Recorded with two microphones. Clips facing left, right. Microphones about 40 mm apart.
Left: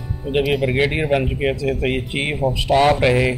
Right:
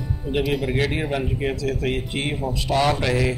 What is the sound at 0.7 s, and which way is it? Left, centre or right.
Speech, left.